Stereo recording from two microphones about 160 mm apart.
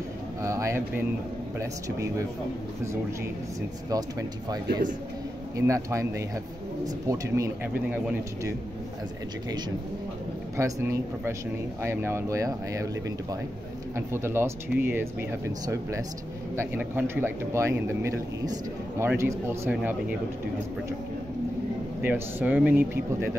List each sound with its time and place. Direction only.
0.4 s a sound: 20° right (ahead or behind)
1.6 s speech: 20° right (ahead or behind)
3.9 s speech: 20° right (ahead or behind)
5.6 s a man's voice: 20° right (ahead or behind)
10.6 s a man's voice: 15° right (ahead or behind)
22.0 s a man's voice: 10° right (ahead or behind)